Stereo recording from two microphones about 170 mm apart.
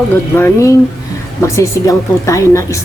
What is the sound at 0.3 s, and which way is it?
A woman's voice, 15° left (ahead or behind).